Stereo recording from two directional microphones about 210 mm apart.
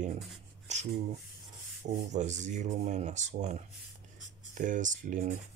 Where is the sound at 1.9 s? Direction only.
35° right (ahead or behind).